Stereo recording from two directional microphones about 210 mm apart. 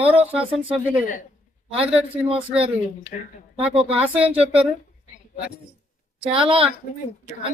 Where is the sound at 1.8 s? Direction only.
25° right (ahead or behind).